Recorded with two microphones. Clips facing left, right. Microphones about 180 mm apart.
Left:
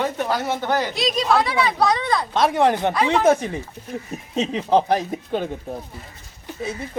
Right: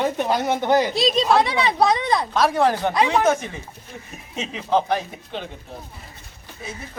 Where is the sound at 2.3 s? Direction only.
20° left (ahead or behind).